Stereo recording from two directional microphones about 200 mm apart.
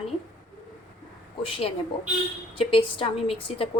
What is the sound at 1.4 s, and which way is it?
A woman's voice, 25° left (ahead or behind).